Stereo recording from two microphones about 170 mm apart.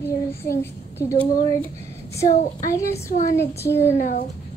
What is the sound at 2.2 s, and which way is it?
Speech, 45° left (ahead or behind).